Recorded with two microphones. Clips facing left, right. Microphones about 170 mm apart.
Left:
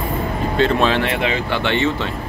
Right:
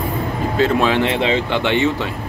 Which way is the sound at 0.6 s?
10° right (ahead or behind).